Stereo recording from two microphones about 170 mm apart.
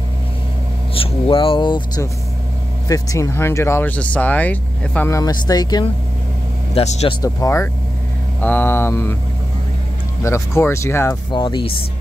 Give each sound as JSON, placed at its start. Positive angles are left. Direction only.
{"t": 0.9, "sound": "speech", "side_deg": 30}
{"t": 6.7, "sound": "speech", "side_deg": 40}
{"t": 7.2, "sound": "speech", "side_deg": 20}
{"t": 10.2, "sound": "speech", "side_deg": 15}
{"t": 11.3, "sound": "speech", "side_deg": 30}